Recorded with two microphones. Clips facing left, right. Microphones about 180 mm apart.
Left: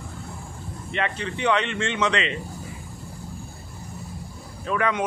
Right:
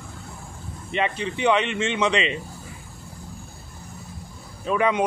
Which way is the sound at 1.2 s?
15° right (ahead or behind).